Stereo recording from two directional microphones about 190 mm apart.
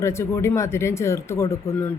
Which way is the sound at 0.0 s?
15° left (ahead or behind).